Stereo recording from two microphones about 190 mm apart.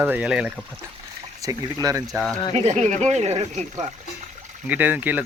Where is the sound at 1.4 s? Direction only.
20° right (ahead or behind).